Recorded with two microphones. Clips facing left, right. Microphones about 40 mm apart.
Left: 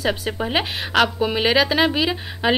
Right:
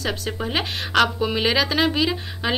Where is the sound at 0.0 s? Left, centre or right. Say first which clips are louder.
Left 3 dB; centre.